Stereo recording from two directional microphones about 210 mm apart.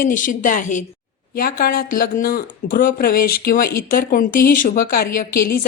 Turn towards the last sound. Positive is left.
turn(degrees=45)  # may be behind; listen again after turning